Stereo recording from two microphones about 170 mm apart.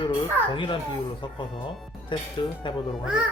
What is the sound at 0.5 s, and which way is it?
Speech, 30° left (ahead or behind).